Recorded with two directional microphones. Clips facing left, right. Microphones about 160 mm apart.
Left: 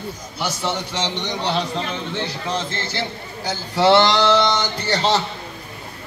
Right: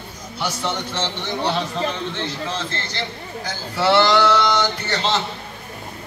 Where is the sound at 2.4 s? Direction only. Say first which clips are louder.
Left 2 dB; 10° left (ahead or behind).